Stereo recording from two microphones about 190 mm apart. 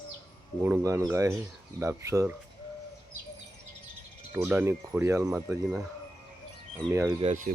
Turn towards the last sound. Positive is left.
turn(degrees=-40)  # may be behind; listen again after turning